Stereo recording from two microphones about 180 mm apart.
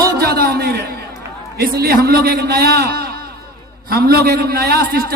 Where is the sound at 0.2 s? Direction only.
60° right (ahead or behind).